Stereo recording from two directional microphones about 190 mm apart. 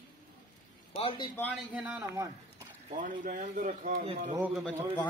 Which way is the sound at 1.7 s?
10° right (ahead or behind).